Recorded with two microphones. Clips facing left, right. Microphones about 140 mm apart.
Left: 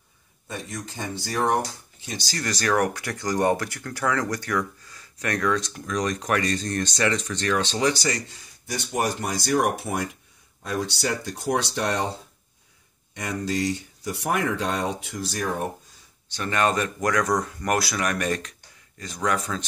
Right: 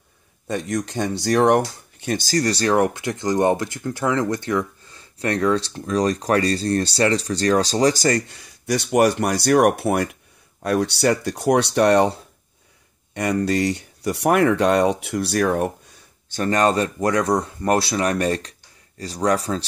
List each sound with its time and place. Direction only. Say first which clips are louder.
0.5 s speech: right 10 dB; 75° right (ahead or behind); by 8.4 s 50° right (ahead or behind)
8.6 s speech: right 9 dB; 70° right (ahead or behind)
16.3 s speech: right 5 dB; 40° right (ahead or behind)